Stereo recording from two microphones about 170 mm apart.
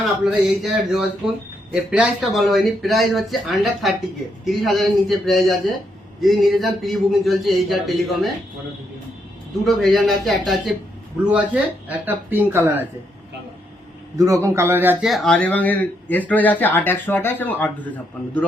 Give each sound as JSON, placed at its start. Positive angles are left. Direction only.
{"t": 0.3, "sound": "speech", "side_deg": 0}
{"t": 9.6, "sound": "speech", "side_deg": 0}
{"t": 11.9, "sound": "speech", "side_deg": -10}
{"t": 14.2, "sound": "speech", "side_deg": -20}
{"t": 15.0, "sound": "speech", "side_deg": 0}